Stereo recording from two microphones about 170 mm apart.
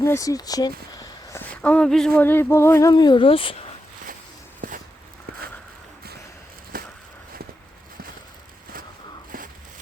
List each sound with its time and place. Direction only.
0.0 s speech: 20° left (ahead or behind)
1.6 s speech: 5° left (ahead or behind); by 3.6 s 35° left (ahead or behind)
4.6 s walk: 60° right (ahead or behind)
6.7 s a sound: 55° right (ahead or behind)